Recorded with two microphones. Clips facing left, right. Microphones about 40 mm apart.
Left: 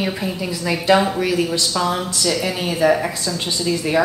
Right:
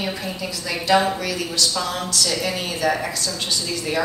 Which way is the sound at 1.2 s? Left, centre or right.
Left.